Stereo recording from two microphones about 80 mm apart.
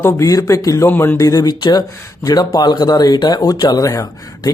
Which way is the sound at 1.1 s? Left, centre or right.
Left.